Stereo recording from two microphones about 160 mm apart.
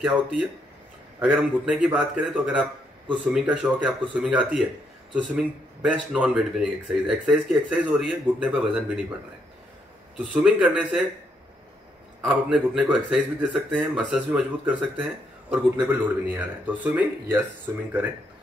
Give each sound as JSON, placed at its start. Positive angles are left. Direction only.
{"t": 0.0, "sound": "speech", "side_deg": -5}
{"t": 10.1, "sound": "speech", "side_deg": 0}
{"t": 12.2, "sound": "speech", "side_deg": -10}